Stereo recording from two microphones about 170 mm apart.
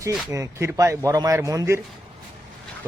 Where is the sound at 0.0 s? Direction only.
15° right (ahead or behind).